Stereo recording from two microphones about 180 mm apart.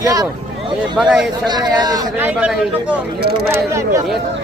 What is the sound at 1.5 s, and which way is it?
Speech, 20° right (ahead or behind).